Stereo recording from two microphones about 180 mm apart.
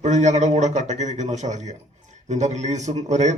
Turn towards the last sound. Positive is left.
turn(degrees=-40)  # may be behind; listen again after turning